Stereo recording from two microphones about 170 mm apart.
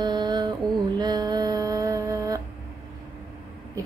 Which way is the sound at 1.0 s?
25° right (ahead or behind).